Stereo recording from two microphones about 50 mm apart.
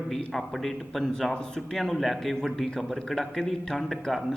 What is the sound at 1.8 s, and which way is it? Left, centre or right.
Speech, centre.